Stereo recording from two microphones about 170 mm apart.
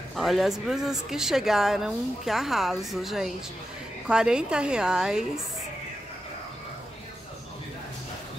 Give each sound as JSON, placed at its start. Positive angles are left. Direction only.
{"t": 0.1, "sound": "a woman's voice", "side_deg": 0}